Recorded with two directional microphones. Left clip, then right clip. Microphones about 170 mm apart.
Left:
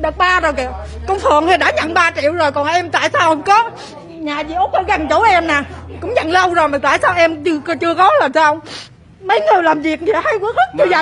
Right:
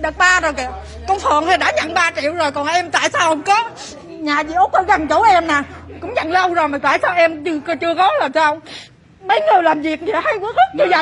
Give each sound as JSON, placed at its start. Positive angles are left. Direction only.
{"t": 0.0, "sound": "a woman's voice", "side_deg": 30}
{"t": 4.2, "sound": "a woman's voice", "side_deg": -10}
{"t": 4.8, "sound": "a woman's voice", "side_deg": 5}
{"t": 6.0, "sound": "speech", "side_deg": 25}